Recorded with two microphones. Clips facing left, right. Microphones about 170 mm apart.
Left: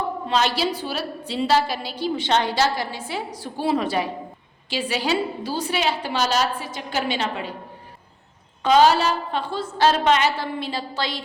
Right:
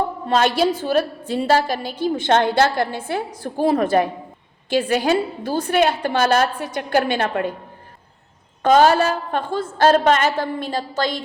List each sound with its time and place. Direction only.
0.3 s a woman's voice: 50° right (ahead or behind)
8.6 s a woman's voice: 50° right (ahead or behind)